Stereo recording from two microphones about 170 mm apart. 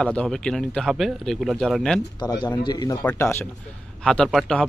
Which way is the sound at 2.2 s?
25° left (ahead or behind).